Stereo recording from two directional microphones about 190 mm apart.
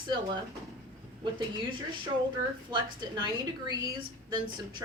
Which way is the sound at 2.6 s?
25° right (ahead or behind).